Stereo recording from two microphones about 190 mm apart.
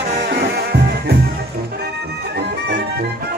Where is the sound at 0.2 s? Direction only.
60° right (ahead or behind).